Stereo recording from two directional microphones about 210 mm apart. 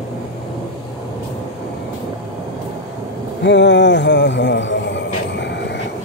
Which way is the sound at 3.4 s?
55° left (ahead or behind).